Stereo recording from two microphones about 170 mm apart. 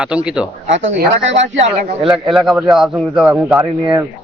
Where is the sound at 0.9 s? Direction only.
90° right.